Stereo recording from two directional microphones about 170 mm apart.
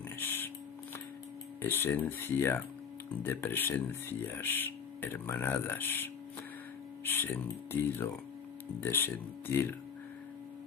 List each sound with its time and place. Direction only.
0.1 s a sound: 10° left (ahead or behind)
1.6 s speech: 10° left (ahead or behind)
7.1 s speech: 10° left (ahead or behind)